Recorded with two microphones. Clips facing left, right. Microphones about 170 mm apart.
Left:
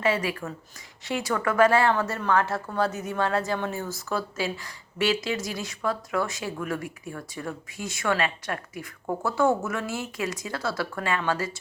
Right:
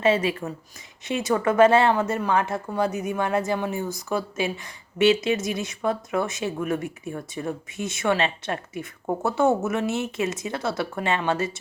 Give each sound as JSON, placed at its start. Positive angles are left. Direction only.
{"t": 0.0, "sound": "speech", "side_deg": -25}